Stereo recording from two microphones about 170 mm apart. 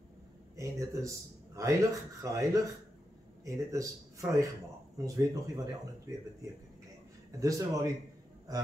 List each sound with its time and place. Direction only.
0.6 s speech: 20° right (ahead or behind)
7.3 s speech: 20° right (ahead or behind)